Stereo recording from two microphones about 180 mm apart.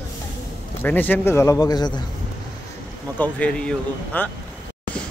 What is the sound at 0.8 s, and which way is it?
Speech, 10° left (ahead or behind).